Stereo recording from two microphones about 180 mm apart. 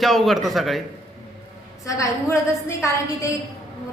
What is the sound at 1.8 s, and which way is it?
A woman's voice, 20° left (ahead or behind).